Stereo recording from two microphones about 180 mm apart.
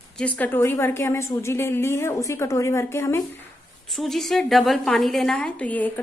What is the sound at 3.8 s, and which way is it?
A woman's voice, centre (ahead or behind).